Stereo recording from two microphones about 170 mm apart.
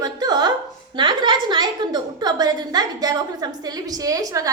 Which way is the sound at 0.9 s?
25° right (ahead or behind).